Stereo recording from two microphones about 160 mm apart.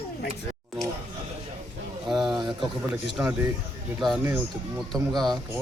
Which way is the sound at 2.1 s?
Centre (ahead or behind).